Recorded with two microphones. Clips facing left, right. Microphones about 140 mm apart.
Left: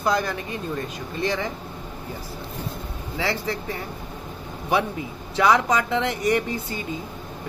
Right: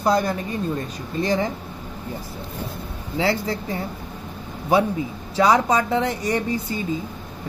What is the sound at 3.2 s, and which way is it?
Speech, 35° right (ahead or behind).